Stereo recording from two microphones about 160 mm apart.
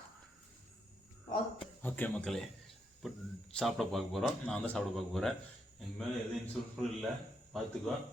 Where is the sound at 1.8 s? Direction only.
10° left (ahead or behind).